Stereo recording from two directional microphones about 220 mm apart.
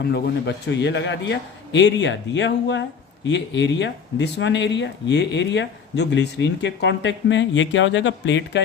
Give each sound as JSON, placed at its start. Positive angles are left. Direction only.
{"t": 0.0, "sound": "a man's voice", "side_deg": 50}